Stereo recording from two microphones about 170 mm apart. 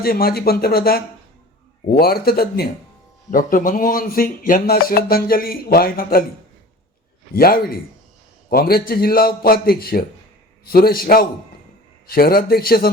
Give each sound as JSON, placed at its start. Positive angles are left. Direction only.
{"t": 0.0, "sound": "speech", "side_deg": 60}
{"t": 7.3, "sound": "speech", "side_deg": 60}